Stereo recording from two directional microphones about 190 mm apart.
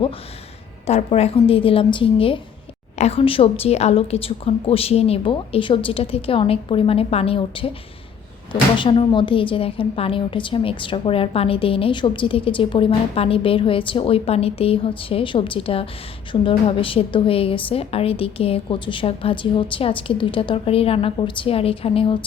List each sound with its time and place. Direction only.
0.9 s a woman's voice: 35° left (ahead or behind)
8.8 s a woman's voice: 25° left (ahead or behind)